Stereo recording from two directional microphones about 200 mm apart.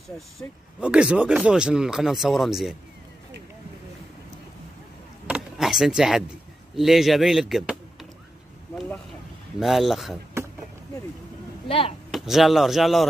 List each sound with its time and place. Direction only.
0.4 s speech: 5° right (ahead or behind)
5.2 s a sound: 5° right (ahead or behind)
6.8 s speech: centre (ahead or behind)
11.6 s speech: 25° left (ahead or behind)
12.1 s speech: centre (ahead or behind)